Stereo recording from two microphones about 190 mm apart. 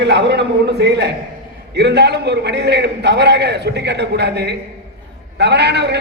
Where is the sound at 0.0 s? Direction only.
65° right (ahead or behind).